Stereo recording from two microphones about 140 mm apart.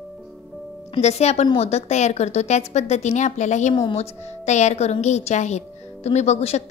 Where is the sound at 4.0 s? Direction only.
55° left (ahead or behind).